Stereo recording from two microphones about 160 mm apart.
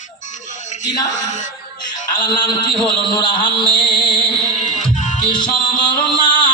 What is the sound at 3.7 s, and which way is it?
Music, 30° left (ahead or behind).